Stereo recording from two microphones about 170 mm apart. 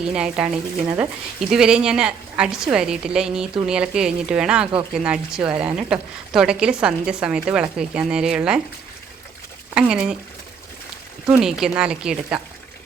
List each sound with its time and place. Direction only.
0.0 s a woman's voice: 5° right (ahead or behind)
9.7 s a woman's voice: 5° right (ahead or behind)
11.3 s a woman's voice: 5° right (ahead or behind)